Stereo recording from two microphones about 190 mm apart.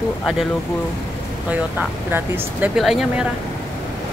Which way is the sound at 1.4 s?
10° right (ahead or behind).